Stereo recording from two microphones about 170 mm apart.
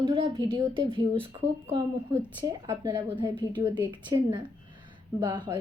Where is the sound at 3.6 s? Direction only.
15° right (ahead or behind).